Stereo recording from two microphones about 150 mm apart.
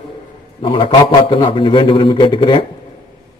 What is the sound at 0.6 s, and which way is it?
A man's voice, 35° left (ahead or behind).